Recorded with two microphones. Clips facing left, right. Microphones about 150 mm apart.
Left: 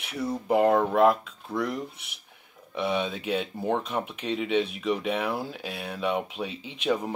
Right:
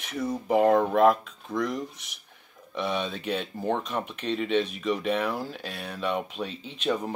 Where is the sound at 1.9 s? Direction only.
60° left (ahead or behind).